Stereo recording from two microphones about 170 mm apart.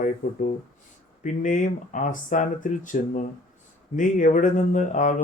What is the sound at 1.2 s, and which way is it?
Speech, 45° left (ahead or behind).